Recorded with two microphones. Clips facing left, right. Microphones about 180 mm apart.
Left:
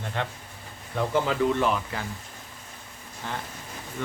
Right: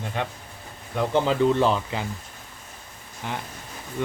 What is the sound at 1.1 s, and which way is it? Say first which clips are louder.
Speech: right 4 dB; 30° right (ahead or behind).